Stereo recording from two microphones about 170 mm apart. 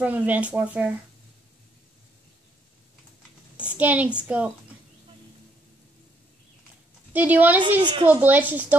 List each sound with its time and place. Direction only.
0.0 s speech: 10° right (ahead or behind)
3.7 s speech: 10° right (ahead or behind)
7.1 s speech: 10° right (ahead or behind)
7.8 s speech: 30° right (ahead or behind)
8.1 s speech: 10° right (ahead or behind)